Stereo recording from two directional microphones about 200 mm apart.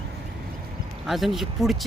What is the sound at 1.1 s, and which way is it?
Speech, centre (ahead or behind).